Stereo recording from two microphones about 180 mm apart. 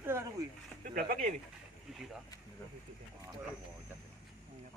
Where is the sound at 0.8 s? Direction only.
50° right (ahead or behind).